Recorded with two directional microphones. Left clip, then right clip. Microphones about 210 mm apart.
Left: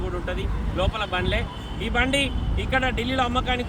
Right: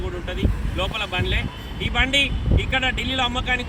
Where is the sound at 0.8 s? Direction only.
20° left (ahead or behind).